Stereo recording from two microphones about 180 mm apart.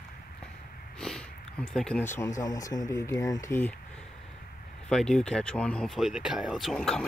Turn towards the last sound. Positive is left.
turn(degrees=5)  # may be behind; listen again after turning